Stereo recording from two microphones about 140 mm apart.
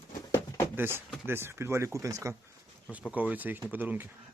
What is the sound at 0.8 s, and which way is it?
Speech, 15° right (ahead or behind).